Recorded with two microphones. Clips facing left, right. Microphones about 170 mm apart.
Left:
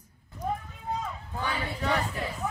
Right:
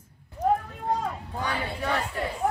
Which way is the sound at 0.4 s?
70° right (ahead or behind).